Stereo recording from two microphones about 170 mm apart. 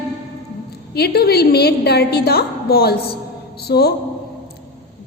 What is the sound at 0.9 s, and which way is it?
A woman's voice, 70° left (ahead or behind).